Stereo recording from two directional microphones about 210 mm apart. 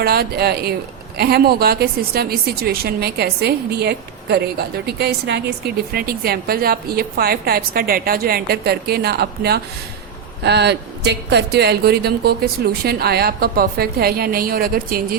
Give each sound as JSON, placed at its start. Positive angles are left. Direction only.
{"t": 0.0, "sound": "speech", "side_deg": -50}